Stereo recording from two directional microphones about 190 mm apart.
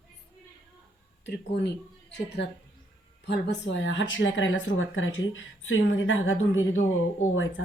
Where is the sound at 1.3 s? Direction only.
60° left (ahead or behind).